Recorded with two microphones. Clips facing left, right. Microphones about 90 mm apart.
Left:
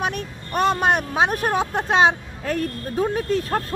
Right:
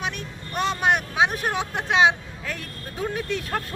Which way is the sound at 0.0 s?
45° left (ahead or behind).